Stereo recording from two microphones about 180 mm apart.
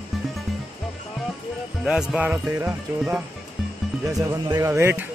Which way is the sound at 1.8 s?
5° right (ahead or behind).